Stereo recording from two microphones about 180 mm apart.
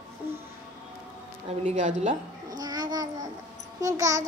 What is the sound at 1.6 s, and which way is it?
Speech, 40° right (ahead or behind).